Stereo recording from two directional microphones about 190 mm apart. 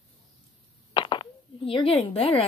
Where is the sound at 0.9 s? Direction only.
25° left (ahead or behind).